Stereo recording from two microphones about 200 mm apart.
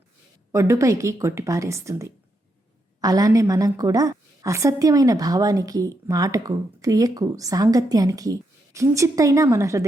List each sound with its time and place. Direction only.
0.5 s a woman's voice: 15° right (ahead or behind)